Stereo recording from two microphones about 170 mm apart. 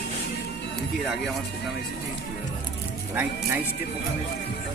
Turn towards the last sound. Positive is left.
turn(degrees=-10)  # may be behind; listen again after turning